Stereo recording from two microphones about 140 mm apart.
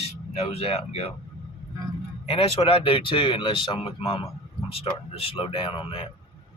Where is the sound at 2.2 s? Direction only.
45° left (ahead or behind).